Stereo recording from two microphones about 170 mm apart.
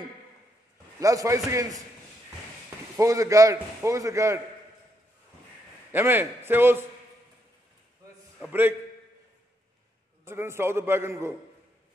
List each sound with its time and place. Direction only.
0.9 s a man's voice: 20° right (ahead or behind)
3.0 s a man's voice: 20° right (ahead or behind)
5.9 s a man's voice: 10° right (ahead or behind)
8.5 s a man's voice: 10° right (ahead or behind)
10.2 s a man's voice: 15° right (ahead or behind)